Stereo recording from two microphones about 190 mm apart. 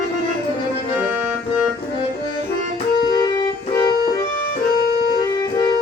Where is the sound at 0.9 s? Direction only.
10° right (ahead or behind).